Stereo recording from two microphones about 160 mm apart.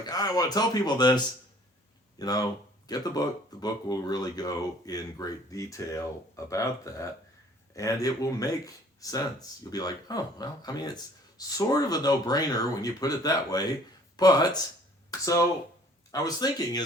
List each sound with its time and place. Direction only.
0.0 s speech: 25° left (ahead or behind)